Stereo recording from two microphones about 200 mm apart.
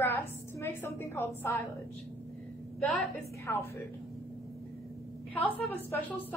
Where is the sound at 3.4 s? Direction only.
15° left (ahead or behind).